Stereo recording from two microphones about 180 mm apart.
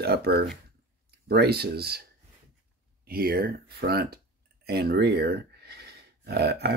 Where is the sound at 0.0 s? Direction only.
60° right (ahead or behind).